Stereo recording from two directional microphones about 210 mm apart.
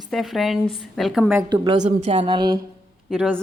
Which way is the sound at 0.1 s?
Centre (ahead or behind).